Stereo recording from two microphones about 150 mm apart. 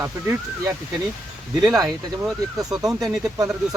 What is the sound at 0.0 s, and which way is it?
Speech, 20° right (ahead or behind).